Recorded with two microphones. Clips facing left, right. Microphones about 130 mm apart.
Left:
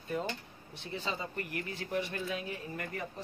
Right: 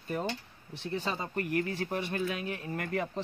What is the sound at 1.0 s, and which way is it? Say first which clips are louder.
Speech: right 1 dB; 55° right (ahead or behind).